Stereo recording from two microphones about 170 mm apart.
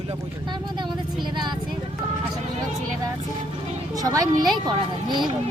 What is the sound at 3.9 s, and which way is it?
Speech, 20° right (ahead or behind).